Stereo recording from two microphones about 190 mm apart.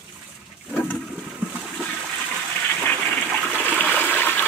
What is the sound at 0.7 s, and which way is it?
Toilet flush, 5° left (ahead or behind).